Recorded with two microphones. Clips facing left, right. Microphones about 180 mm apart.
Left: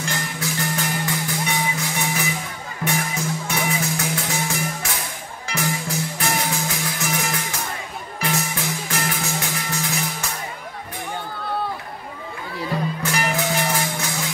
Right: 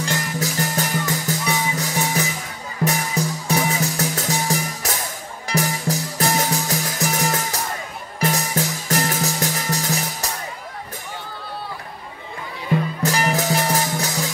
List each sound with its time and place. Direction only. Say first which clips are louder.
0.0 s music: right 3 dB; 40° right (ahead or behind)
13.0 s music: right 3 dB; 35° right (ahead or behind)